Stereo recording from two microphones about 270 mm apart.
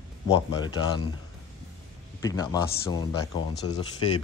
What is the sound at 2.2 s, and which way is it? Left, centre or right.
Speech, centre.